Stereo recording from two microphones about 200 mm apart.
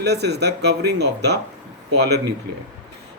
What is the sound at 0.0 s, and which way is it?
Speech, 55° right (ahead or behind).